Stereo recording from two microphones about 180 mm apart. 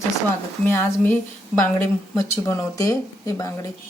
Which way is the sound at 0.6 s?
10° left (ahead or behind).